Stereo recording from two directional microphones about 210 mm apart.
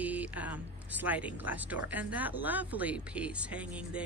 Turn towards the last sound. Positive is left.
turn(degrees=-5)  # may be behind; listen again after turning